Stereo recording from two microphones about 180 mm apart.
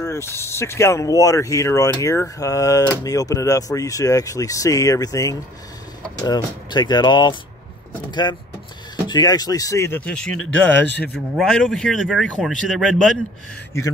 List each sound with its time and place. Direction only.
0.0 s speech: 15° left (ahead or behind)